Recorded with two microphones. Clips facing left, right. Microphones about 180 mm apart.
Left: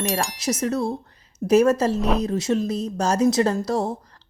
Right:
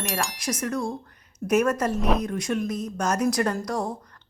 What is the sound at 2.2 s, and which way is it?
Speech, 25° left (ahead or behind).